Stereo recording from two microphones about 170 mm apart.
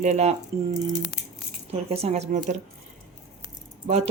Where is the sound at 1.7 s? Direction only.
40° right (ahead or behind).